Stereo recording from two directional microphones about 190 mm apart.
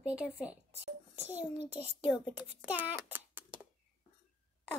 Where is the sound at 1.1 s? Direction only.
10° right (ahead or behind).